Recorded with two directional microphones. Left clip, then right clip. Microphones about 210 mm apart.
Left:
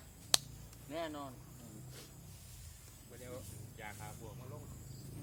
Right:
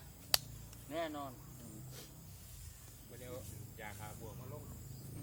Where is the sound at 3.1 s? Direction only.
Centre (ahead or behind).